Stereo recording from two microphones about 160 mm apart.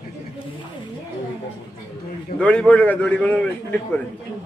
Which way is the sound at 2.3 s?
10° left (ahead or behind).